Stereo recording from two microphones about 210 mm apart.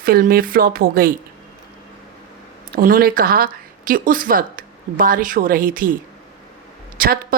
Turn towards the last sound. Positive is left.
turn(degrees=-45)  # may be behind; listen again after turning